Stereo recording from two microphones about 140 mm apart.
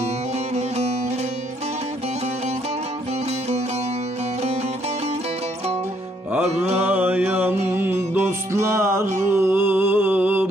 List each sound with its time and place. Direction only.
0.5 s music: 50° right (ahead or behind)
6.7 s music: 15° right (ahead or behind)
9.3 s mantra: 15° right (ahead or behind)